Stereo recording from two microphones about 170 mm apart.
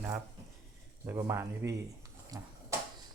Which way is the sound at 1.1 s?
20° right (ahead or behind).